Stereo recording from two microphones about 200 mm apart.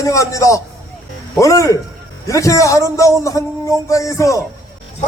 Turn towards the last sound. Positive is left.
turn(degrees=15)  # may be behind; listen again after turning